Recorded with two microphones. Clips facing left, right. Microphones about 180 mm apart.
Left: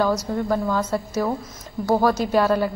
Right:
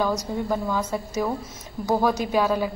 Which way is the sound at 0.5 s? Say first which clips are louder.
Left 3 dB; 10° right (ahead or behind).